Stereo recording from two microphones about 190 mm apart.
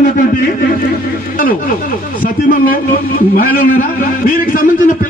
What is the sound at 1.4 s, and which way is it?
Speech, 50° left (ahead or behind).